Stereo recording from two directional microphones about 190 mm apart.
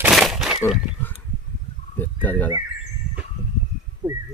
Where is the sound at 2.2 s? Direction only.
10° left (ahead or behind).